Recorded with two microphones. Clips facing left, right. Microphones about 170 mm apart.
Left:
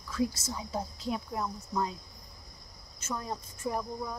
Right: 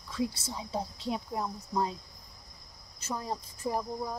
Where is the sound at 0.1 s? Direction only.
30° right (ahead or behind).